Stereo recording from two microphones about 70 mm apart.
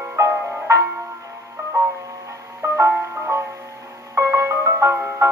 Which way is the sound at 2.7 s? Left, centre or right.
Right.